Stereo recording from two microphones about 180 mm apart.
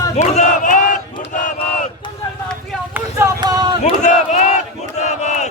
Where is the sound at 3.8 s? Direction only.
40° left (ahead or behind).